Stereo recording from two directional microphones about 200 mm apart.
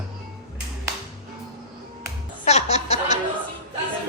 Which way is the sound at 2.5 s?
35° left (ahead or behind).